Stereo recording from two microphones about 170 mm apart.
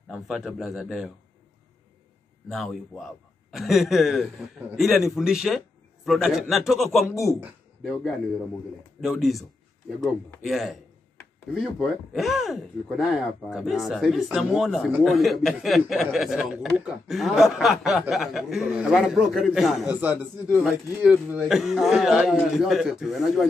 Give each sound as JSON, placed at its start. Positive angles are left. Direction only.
{"t": 0.1, "sound": "speech", "side_deg": 0}
{"t": 2.5, "sound": "speech", "side_deg": 0}
{"t": 7.1, "sound": "speech", "side_deg": 15}
{"t": 7.8, "sound": "speech", "side_deg": 0}